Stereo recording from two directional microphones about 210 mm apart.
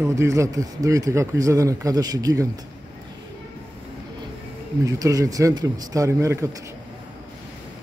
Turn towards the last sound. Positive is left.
turn(degrees=-15)  # may be behind; listen again after turning